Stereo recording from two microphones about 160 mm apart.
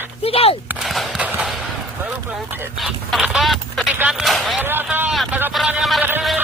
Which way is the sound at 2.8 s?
Centre (ahead or behind).